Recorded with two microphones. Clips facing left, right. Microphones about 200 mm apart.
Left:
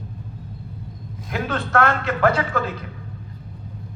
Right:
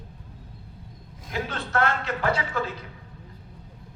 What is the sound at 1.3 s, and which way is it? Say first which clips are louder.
A man's voice: left 6 dB; 60° left (ahead or behind).